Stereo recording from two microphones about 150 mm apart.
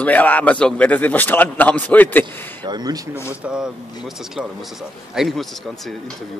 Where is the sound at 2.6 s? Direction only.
25° right (ahead or behind).